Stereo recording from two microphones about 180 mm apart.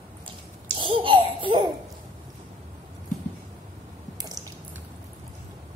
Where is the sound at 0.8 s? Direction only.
30° right (ahead or behind).